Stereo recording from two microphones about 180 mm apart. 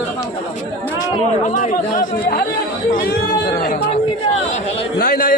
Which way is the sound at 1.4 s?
45° left (ahead or behind).